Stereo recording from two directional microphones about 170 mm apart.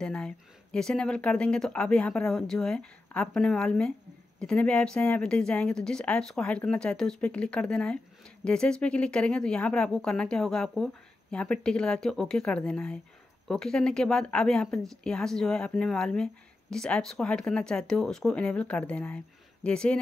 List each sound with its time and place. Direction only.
0.0 s speech: 5° left (ahead or behind)